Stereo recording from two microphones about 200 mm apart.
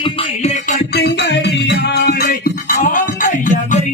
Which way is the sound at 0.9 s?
55° left (ahead or behind).